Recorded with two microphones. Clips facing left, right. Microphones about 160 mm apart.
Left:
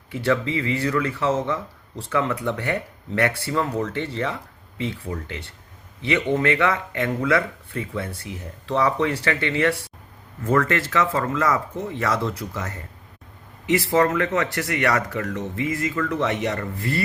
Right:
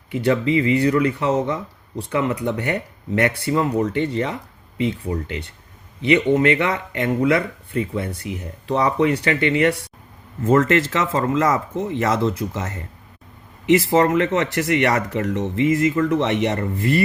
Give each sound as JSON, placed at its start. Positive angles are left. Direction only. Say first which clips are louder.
{"t": 0.1, "sound": "speech", "louder": "right 4 dB", "side_deg": -15}
{"t": 6.0, "sound": "speech", "louder": "right 5 dB", "side_deg": -15}